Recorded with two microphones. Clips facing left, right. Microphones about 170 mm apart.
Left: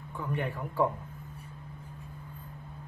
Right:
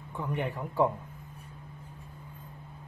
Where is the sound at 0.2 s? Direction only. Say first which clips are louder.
Right 1 dB; 20° right (ahead or behind).